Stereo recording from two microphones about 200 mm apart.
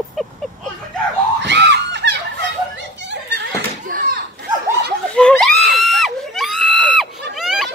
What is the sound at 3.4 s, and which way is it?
Door, 45° right (ahead or behind).